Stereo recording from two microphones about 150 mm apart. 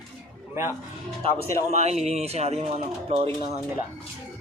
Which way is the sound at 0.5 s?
15° right (ahead or behind).